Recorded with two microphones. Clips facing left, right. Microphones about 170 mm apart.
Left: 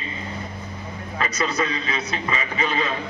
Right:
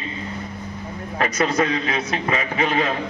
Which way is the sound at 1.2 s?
50° right (ahead or behind).